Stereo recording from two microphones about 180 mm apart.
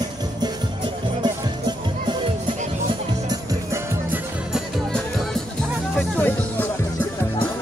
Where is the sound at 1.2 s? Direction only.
25° right (ahead or behind).